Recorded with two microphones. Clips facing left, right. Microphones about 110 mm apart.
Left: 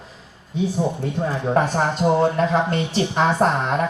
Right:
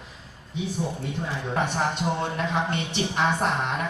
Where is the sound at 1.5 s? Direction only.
40° left (ahead or behind).